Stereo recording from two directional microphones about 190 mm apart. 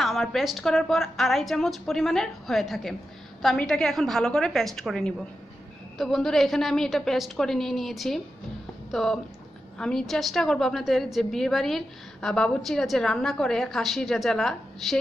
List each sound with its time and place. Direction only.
0.0 s a woman's voice: centre (ahead or behind)